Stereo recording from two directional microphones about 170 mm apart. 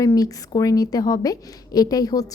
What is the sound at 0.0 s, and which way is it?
A woman's voice, 20° left (ahead or behind).